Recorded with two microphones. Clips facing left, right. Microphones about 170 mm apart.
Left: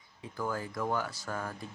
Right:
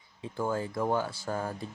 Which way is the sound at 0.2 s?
25° right (ahead or behind).